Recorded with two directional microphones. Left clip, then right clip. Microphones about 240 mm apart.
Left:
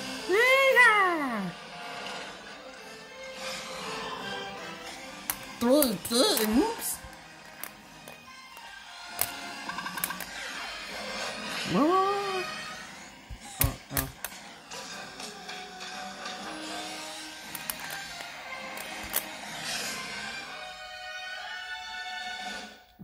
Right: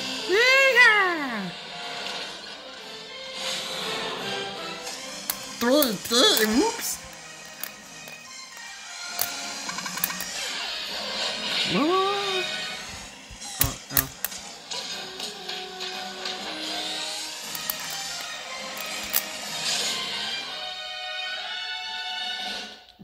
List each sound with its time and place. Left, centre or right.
0.0 s music: centre
0.3 s a sound: centre
1.4 s vehicle: centre
3.3 s music: right
5.2 s speech: centre
9.0 s music: right
10.5 s music: centre
14.7 s music: centre